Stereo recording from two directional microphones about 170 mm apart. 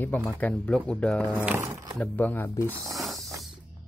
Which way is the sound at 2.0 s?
10° left (ahead or behind).